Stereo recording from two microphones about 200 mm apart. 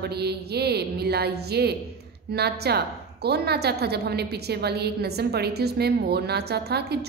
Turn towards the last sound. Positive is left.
turn(degrees=-55)  # may be behind; listen again after turning